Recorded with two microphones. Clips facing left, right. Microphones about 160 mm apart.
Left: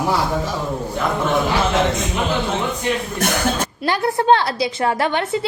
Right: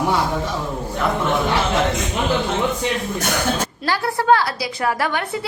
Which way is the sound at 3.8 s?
20° left (ahead or behind).